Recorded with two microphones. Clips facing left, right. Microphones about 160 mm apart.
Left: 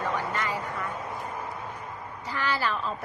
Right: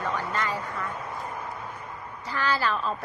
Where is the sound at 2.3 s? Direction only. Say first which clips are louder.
Right 2 dB; 20° left (ahead or behind).